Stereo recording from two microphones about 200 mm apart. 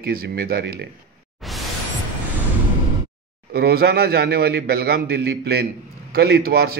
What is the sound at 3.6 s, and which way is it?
A man's voice, 50° right (ahead or behind).